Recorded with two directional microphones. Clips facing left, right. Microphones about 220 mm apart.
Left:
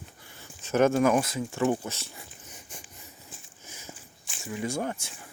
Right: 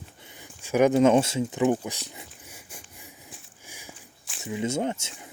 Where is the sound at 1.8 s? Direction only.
15° right (ahead or behind).